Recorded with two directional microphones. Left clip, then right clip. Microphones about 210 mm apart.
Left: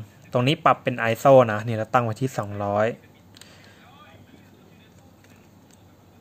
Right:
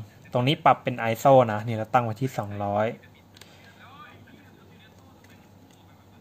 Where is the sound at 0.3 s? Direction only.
10° left (ahead or behind).